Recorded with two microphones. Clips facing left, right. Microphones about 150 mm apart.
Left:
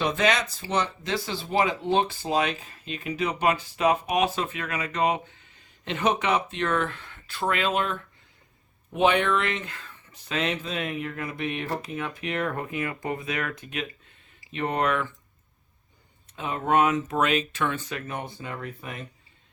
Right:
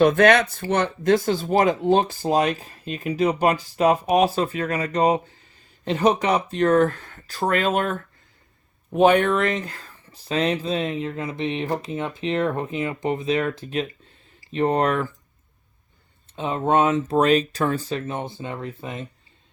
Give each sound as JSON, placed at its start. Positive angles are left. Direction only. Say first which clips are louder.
{"t": 0.0, "sound": "speech", "louder": "right 9 dB", "side_deg": -55}
{"t": 16.3, "sound": "speech", "louder": "right 4 dB", "side_deg": -30}